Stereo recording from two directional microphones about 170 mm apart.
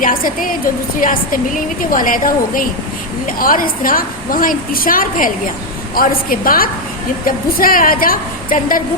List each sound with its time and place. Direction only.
0.0 s a woman's voice: 55° left (ahead or behind)